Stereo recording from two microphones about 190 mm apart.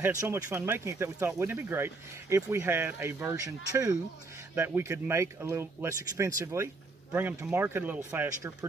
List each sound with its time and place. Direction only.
0.0 s speech: 15° right (ahead or behind)